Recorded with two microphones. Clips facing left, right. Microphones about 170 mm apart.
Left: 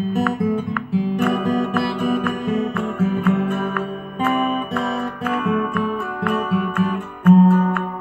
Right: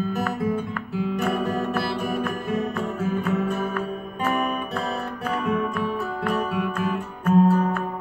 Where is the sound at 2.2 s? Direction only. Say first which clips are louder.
Left 5 dB; 65° left (ahead or behind).